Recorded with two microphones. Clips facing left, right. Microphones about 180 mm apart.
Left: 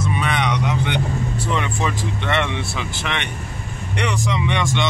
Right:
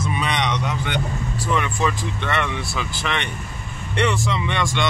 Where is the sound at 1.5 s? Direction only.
20° left (ahead or behind).